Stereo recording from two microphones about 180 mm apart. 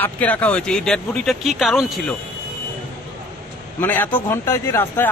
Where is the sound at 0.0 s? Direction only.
10° left (ahead or behind).